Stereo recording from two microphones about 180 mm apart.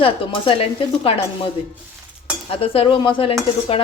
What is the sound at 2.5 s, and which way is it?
Speech, 30° left (ahead or behind).